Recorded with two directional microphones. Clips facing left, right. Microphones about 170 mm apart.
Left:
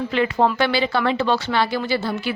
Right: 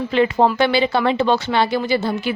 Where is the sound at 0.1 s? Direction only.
25° right (ahead or behind).